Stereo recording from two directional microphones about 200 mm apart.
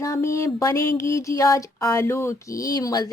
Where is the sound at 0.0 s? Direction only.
15° left (ahead or behind).